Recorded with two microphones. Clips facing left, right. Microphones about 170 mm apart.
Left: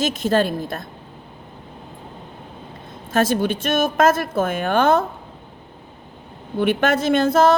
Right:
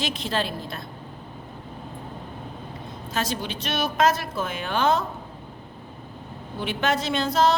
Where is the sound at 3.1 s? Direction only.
50° left (ahead or behind).